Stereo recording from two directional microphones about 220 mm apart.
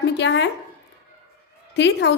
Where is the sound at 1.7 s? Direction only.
50° left (ahead or behind).